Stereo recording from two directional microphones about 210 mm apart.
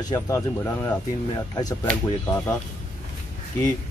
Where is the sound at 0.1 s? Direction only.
15° left (ahead or behind).